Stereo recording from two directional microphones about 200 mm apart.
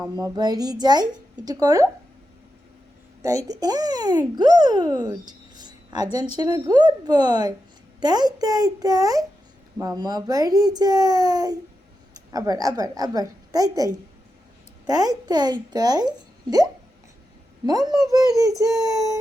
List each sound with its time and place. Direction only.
0.2 s a child's voice: 20° right (ahead or behind)
3.2 s a child's voice: 15° right (ahead or behind)
17.7 s a child's voice: 20° right (ahead or behind)